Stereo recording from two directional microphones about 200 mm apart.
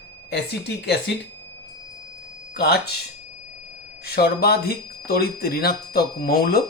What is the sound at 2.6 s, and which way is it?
Speech, 50° left (ahead or behind).